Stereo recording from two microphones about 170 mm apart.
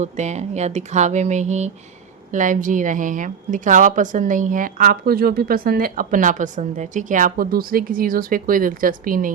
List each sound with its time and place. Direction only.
0.0 s a woman's voice: 40° right (ahead or behind)